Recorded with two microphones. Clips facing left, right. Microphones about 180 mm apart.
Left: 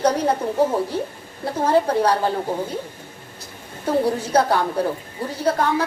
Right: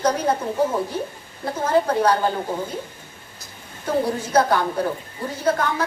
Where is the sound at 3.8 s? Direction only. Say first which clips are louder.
Left 2 dB; 35° left (ahead or behind).